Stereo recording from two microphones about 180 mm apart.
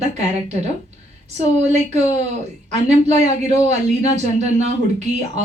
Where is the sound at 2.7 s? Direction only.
35° right (ahead or behind).